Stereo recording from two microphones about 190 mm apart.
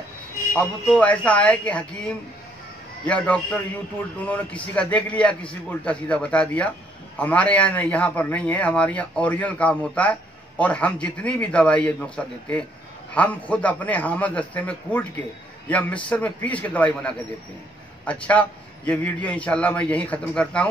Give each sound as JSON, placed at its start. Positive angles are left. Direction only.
{"t": 0.5, "sound": "a man's voice", "side_deg": 5}